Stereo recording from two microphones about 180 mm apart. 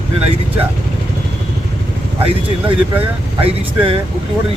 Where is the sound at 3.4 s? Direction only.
30° right (ahead or behind).